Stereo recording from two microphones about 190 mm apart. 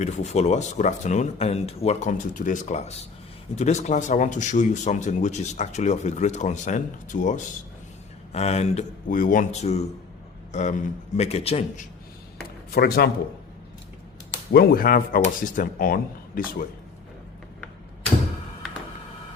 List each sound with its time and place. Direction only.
0.0 s speech: 35° left (ahead or behind)
12.7 s speech: 55° left (ahead or behind)
14.5 s speech: 50° left (ahead or behind)